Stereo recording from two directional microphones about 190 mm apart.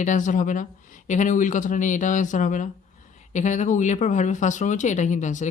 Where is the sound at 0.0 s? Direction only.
40° left (ahead or behind).